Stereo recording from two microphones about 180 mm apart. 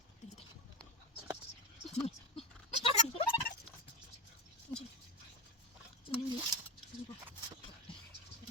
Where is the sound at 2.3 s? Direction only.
35° left (ahead or behind).